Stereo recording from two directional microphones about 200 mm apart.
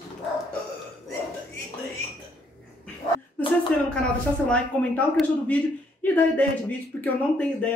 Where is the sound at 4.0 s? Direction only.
5° left (ahead or behind).